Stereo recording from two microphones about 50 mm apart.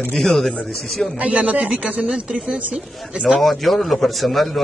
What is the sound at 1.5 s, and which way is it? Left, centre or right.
Speech, centre.